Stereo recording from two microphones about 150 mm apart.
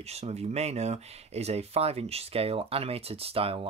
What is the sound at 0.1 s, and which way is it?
Speech, 45° right (ahead or behind).